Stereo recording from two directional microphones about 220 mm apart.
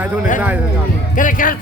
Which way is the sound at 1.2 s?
40° left (ahead or behind).